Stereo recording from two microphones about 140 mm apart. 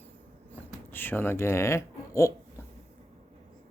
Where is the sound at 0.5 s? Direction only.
15° left (ahead or behind).